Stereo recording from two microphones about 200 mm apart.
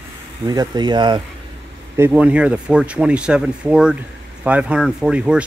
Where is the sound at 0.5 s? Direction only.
20° right (ahead or behind).